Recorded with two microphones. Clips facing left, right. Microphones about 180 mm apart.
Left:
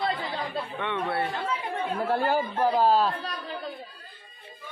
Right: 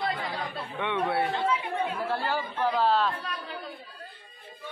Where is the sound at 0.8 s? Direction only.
10° right (ahead or behind).